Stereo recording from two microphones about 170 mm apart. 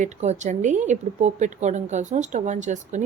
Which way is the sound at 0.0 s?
45° right (ahead or behind).